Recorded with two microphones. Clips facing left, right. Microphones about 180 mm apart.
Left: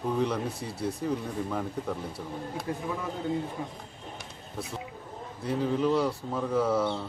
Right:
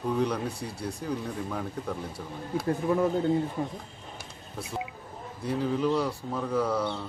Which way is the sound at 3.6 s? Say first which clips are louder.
Right 5 dB; 50° right (ahead or behind).